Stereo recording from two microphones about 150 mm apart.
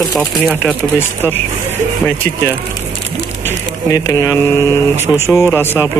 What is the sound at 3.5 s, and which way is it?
Speech, 20° left (ahead or behind).